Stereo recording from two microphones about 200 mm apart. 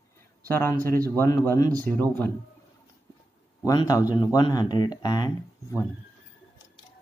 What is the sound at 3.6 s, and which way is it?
Speech, 20° left (ahead or behind).